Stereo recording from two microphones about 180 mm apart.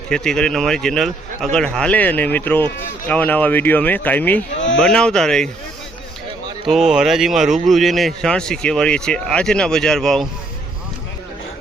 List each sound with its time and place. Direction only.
0.1 s speech: 5° left (ahead or behind)
6.7 s speech: centre (ahead or behind)